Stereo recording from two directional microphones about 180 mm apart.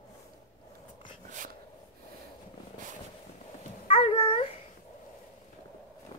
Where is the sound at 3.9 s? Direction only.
30° left (ahead or behind).